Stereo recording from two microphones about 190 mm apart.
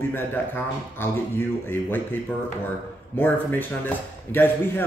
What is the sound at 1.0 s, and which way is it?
Speech, 10° left (ahead or behind).